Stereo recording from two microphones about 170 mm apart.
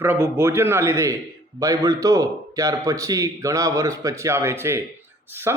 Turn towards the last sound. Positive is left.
turn(degrees=-15)  # may be behind; listen again after turning